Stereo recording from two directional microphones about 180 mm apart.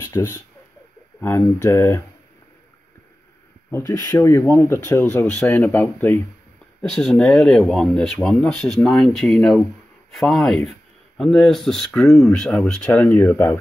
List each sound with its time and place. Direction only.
0.0 s speech: 15° left (ahead or behind)
1.6 s speech: 15° left (ahead or behind)
3.7 s speech: 20° left (ahead or behind)